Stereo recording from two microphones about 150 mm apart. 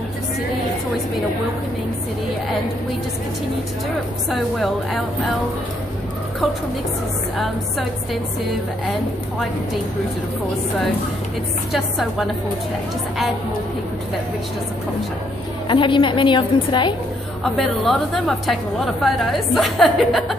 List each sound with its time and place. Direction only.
4.3 s a woman's voice: centre (ahead or behind)
11.7 s a woman's voice: centre (ahead or behind)
15.7 s a woman's voice: 35° left (ahead or behind)
17.4 s a woman's voice: centre (ahead or behind)